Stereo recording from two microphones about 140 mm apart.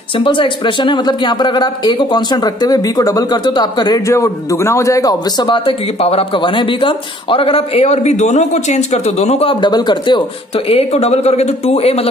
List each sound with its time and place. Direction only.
0.1 s speech: 35° left (ahead or behind)